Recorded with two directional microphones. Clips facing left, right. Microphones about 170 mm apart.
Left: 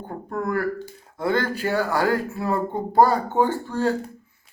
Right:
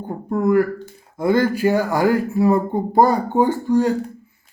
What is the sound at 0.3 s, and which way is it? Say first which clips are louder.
Speech: right 8 dB; 15° right (ahead or behind).